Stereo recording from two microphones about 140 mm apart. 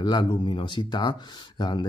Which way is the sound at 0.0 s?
30° left (ahead or behind).